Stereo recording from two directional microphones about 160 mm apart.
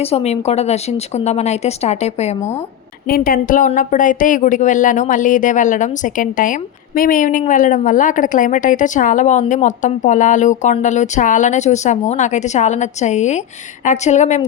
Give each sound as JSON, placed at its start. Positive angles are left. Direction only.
{"t": 0.0, "sound": "a woman's voice", "side_deg": 40}
{"t": 3.1, "sound": "a woman's voice", "side_deg": 65}